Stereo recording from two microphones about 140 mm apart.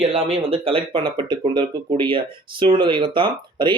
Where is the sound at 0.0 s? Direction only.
45° right (ahead or behind).